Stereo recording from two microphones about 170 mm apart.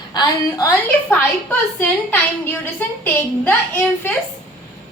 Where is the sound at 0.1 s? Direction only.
20° left (ahead or behind).